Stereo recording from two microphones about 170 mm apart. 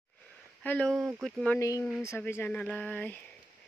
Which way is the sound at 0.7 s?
5° left (ahead or behind).